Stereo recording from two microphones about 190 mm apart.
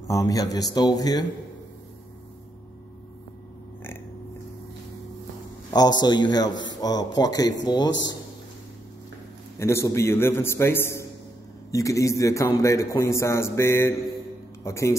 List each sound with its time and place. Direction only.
0.1 s a man's voice: 20° left (ahead or behind)
5.7 s a man's voice: 20° left (ahead or behind)
6.5 s a man's voice: 75° left (ahead or behind)
6.8 s a man's voice: 20° left (ahead or behind)
9.6 s a man's voice: 15° left (ahead or behind)